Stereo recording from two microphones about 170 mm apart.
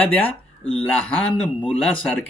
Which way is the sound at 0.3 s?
35° left (ahead or behind).